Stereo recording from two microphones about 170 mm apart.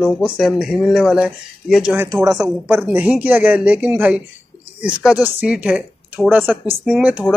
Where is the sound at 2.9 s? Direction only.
10° right (ahead or behind).